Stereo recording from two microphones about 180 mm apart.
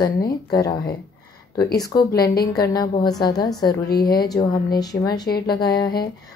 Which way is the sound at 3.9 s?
60° left (ahead or behind).